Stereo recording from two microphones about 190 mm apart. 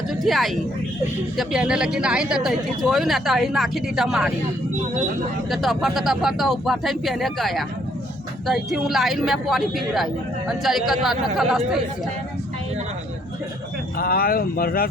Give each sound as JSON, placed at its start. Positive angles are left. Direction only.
{"t": 0.1, "sound": "a man's voice", "side_deg": 0}
{"t": 5.5, "sound": "a man's voice", "side_deg": 0}
{"t": 14.0, "sound": "speech", "side_deg": 50}